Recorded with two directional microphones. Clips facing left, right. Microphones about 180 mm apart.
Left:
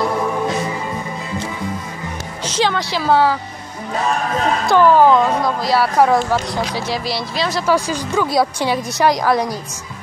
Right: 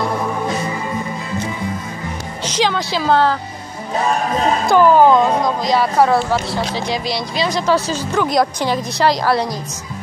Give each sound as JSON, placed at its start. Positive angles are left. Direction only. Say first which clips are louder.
{"t": 2.4, "sound": "music", "louder": "even", "side_deg": 5}
{"t": 3.1, "sound": "speech", "louder": "even", "side_deg": 5}
{"t": 4.6, "sound": "speech", "louder": "even", "side_deg": -5}
{"t": 5.0, "sound": "speech", "louder": "right 1 dB", "side_deg": -15}
{"t": 5.6, "sound": "speech", "louder": "left 1 dB", "side_deg": 5}